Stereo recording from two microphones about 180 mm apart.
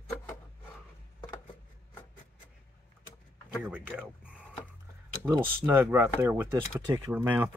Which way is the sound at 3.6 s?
10° right (ahead or behind).